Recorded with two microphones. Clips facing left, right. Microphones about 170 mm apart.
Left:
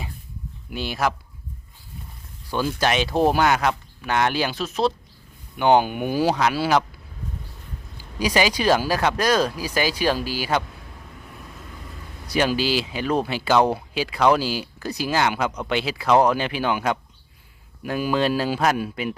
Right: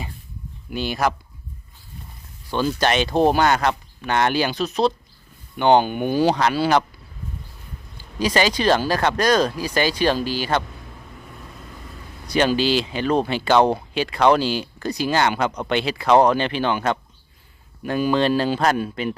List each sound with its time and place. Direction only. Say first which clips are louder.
0.7 s speech: right 2 dB; centre (ahead or behind)
2.5 s speech: right 2 dB; 10° left (ahead or behind)
8.2 s speech: right 1 dB; 10° left (ahead or behind)
12.3 s speech: right 3 dB; 5° left (ahead or behind)